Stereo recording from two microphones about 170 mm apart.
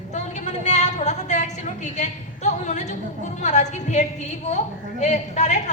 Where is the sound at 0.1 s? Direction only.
45° left (ahead or behind).